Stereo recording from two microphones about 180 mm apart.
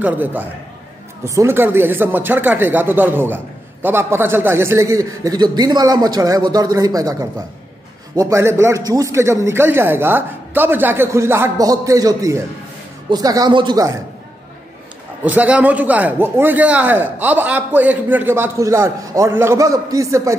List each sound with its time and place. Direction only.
0.0 s a man's voice: 10° right (ahead or behind)
15.2 s a man's voice: 10° right (ahead or behind)